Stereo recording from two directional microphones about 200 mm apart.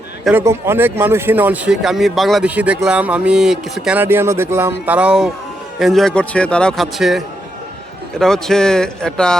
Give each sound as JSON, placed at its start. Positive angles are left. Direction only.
{"t": 0.3, "sound": "a man's voice", "side_deg": -10}
{"t": 8.2, "sound": "a man's voice", "side_deg": 0}